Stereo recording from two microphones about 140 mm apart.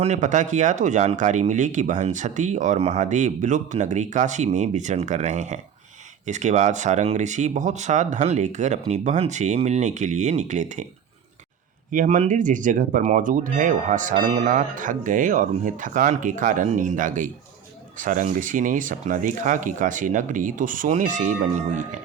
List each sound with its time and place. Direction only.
0.0 s speech: 55° right (ahead or behind)
11.9 s speech: 65° right (ahead or behind)